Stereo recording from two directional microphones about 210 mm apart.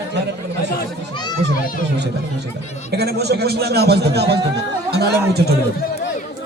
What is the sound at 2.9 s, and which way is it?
A man's voice, 50° right (ahead or behind).